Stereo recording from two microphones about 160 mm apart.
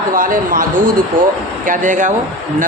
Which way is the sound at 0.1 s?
60° right (ahead or behind).